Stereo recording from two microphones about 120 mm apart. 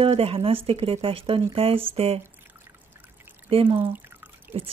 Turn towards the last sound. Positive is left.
turn(degrees=-50)  # may be behind; listen again after turning